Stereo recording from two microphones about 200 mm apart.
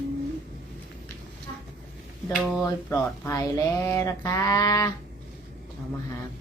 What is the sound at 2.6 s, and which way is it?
Speech, 15° left (ahead or behind).